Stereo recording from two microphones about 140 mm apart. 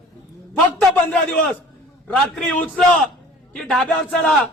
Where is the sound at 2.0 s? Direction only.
5° left (ahead or behind).